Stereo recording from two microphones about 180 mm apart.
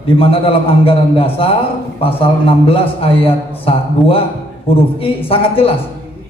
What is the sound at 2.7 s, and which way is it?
A man's voice, 30° left (ahead or behind).